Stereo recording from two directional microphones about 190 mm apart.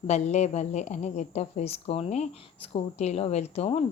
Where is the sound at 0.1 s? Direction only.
35° left (ahead or behind).